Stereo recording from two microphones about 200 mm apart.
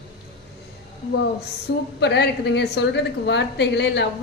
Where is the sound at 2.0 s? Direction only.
55° left (ahead or behind).